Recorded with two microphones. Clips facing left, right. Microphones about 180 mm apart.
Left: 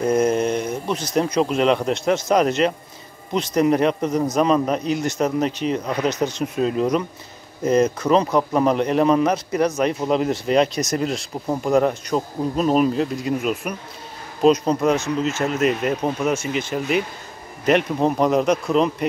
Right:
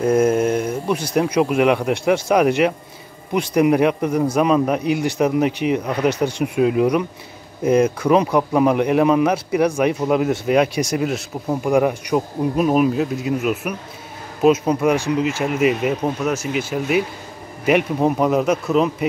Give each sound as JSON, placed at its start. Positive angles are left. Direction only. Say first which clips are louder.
{"t": 0.0, "sound": "a man's voice", "louder": "right 2 dB", "side_deg": -5}